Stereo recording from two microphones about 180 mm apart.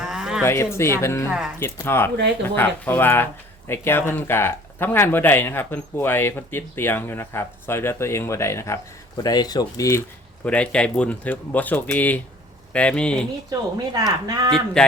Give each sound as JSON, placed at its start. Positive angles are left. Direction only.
{"t": 0.0, "sound": "a sound", "side_deg": -5}
{"t": 0.4, "sound": "speech", "side_deg": 15}
{"t": 1.3, "sound": "speech", "side_deg": -5}
{"t": 1.5, "sound": "speech", "side_deg": 15}
{"t": 10.4, "sound": "speech", "side_deg": 5}
{"t": 13.5, "sound": "speech", "side_deg": -20}
{"t": 14.5, "sound": "speech", "side_deg": 5}